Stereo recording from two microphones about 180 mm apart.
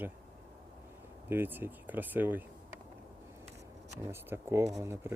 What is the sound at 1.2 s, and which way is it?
Speech, 10° right (ahead or behind).